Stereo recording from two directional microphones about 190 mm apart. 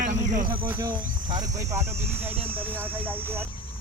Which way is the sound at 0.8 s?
20° right (ahead or behind).